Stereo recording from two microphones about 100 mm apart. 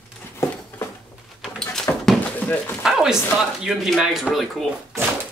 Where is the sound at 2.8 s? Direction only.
5° right (ahead or behind).